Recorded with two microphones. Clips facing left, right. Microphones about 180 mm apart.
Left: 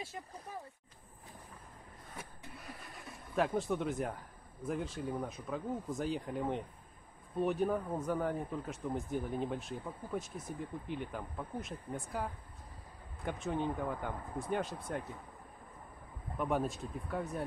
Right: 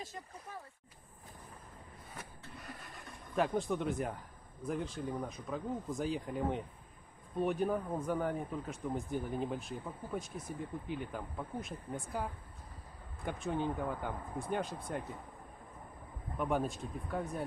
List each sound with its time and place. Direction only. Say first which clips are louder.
2.6 s a man's voice: even; centre (ahead or behind)
16.3 s a man's voice: even; centre (ahead or behind)